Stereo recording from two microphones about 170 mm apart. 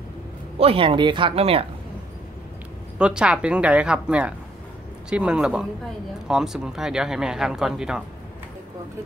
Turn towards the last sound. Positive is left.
turn(degrees=-5)  # may be behind; listen again after turning